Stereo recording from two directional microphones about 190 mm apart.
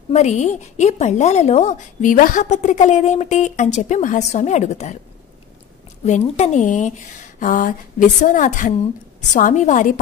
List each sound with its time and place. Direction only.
0.1 s a woman's voice: 35° left (ahead or behind)
6.0 s a woman's voice: 35° left (ahead or behind)